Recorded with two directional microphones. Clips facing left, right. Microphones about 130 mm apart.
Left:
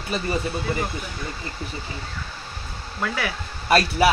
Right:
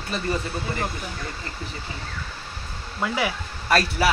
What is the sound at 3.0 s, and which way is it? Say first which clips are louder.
Speech: right 2 dB; 20° right (ahead or behind).